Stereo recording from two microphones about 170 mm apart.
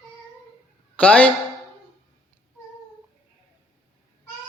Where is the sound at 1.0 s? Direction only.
10° left (ahead or behind).